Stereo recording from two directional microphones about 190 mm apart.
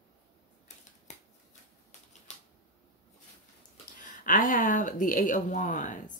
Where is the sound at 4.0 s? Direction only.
45° left (ahead or behind).